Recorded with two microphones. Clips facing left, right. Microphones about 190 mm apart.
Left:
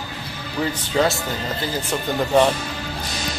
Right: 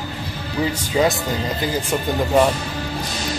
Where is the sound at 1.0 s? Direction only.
10° right (ahead or behind).